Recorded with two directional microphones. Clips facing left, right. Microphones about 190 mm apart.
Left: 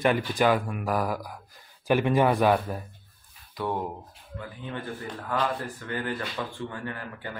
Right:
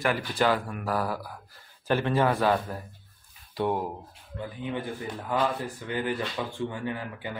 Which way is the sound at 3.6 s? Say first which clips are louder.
Right 4 dB; 30° right (ahead or behind).